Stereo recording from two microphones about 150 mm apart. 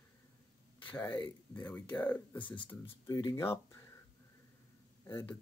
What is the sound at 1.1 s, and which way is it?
Speech, 10° left (ahead or behind).